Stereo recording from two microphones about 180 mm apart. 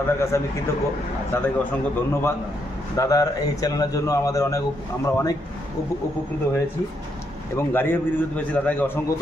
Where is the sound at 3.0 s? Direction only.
20° left (ahead or behind).